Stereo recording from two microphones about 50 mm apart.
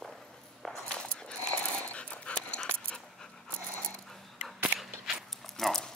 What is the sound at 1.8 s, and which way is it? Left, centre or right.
Dog, left.